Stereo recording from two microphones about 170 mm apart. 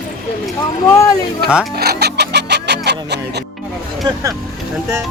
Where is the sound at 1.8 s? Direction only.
70° right (ahead or behind).